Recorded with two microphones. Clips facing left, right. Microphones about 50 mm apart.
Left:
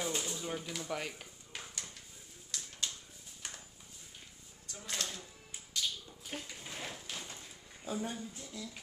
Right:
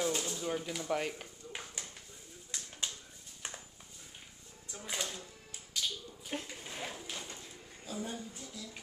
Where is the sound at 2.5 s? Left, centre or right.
Right.